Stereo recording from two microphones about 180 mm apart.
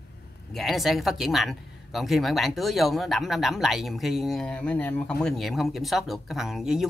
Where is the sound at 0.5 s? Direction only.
Centre (ahead or behind).